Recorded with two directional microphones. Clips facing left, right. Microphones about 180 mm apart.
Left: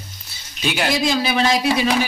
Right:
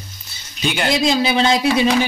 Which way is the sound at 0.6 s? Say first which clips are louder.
Right 1 dB; centre (ahead or behind).